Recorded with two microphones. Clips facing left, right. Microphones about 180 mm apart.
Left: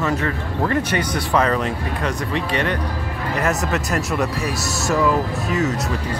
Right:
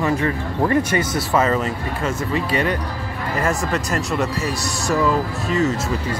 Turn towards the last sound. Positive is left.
turn(degrees=0)  # may be behind; listen again after turning